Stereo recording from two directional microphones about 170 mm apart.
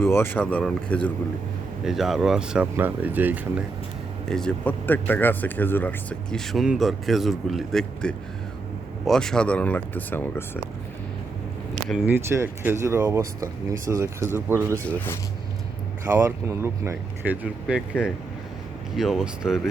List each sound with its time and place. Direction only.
0.0 s speech: 15° left (ahead or behind); by 3.6 s 10° right (ahead or behind)
4.3 s speech: 5° left (ahead or behind)
11.9 s speech: 10° right (ahead or behind)
16.0 s speech: 15° right (ahead or behind)